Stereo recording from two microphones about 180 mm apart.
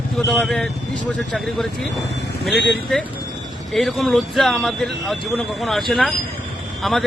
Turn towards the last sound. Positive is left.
turn(degrees=0)  # may be behind; listen again after turning